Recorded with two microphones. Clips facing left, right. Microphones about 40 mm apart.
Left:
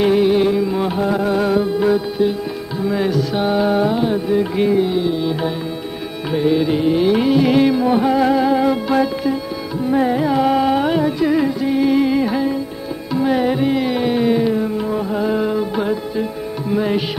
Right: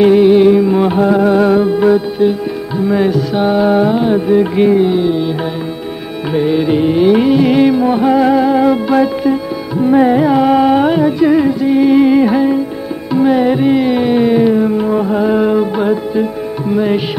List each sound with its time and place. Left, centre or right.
0.0 s music: right
2.0 s music: right
6.3 s music: right
9.8 s music: right
10.4 s carnatic music: right
10.9 s music: centre
13.4 s carnatic music: right
15.7 s music: right